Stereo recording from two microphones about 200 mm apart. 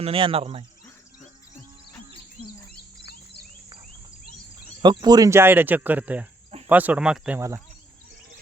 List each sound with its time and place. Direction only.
0.0 s speech: 25° right (ahead or behind)
4.8 s speech: 20° right (ahead or behind)